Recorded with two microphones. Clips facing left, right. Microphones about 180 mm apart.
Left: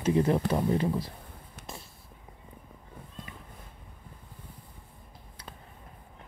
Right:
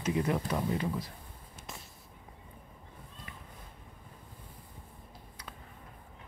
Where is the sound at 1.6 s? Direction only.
65° left (ahead or behind).